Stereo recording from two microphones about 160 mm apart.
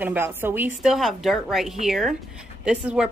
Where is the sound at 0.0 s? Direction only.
10° right (ahead or behind).